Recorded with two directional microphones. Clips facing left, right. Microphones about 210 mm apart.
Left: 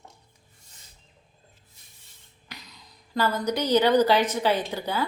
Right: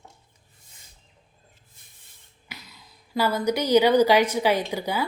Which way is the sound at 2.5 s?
5° right (ahead or behind).